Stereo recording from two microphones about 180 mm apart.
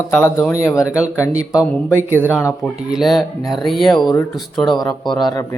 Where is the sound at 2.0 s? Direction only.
10° right (ahead or behind).